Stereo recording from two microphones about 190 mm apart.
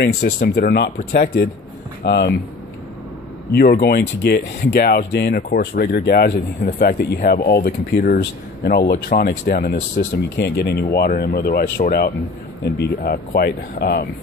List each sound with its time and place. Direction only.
0.0 s speech: 60° left (ahead or behind)
3.5 s speech: 55° left (ahead or behind)